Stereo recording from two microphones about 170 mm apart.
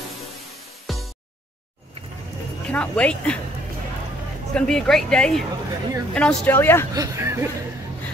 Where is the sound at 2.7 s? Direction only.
5° left (ahead or behind).